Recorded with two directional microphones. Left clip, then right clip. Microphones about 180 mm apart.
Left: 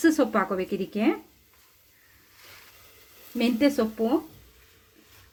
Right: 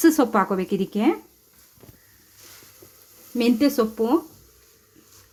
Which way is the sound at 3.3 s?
60° right (ahead or behind).